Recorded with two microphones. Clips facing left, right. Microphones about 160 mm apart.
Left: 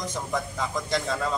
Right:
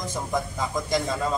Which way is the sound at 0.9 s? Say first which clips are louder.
Right 2 dB; 15° right (ahead or behind).